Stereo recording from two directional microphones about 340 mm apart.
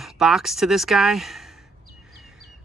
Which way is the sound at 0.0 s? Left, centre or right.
Centre.